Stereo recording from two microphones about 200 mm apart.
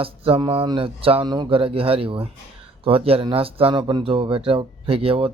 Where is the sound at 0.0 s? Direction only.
25° right (ahead or behind).